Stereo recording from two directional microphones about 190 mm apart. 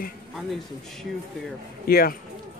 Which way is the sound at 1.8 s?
55° left (ahead or behind).